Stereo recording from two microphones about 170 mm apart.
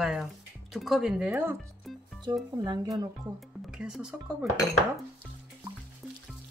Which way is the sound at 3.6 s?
5° right (ahead or behind).